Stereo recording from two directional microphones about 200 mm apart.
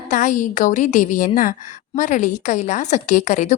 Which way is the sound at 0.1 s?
40° left (ahead or behind).